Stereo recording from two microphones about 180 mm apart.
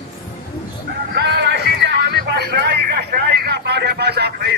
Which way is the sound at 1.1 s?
65° right (ahead or behind).